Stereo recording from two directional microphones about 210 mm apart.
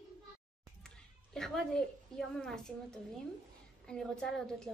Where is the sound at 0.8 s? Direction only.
5° left (ahead or behind).